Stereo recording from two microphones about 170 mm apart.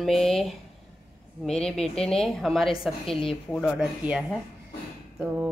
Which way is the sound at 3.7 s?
5° right (ahead or behind).